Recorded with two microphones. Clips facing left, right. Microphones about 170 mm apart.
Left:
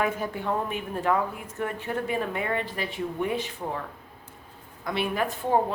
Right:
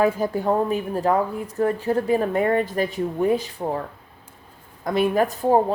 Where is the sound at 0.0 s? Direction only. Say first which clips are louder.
Right 7 dB; 40° right (ahead or behind).